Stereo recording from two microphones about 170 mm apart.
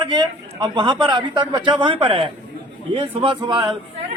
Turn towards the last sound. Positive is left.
turn(degrees=-25)  # may be behind; listen again after turning